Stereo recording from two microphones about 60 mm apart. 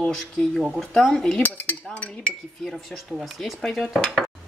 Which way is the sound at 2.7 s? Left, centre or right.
Centre.